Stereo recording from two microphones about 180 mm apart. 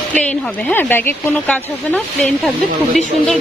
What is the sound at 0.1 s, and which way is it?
Speech, 10° left (ahead or behind).